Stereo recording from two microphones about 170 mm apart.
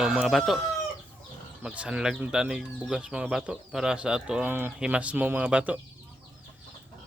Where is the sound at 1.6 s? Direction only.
5° right (ahead or behind).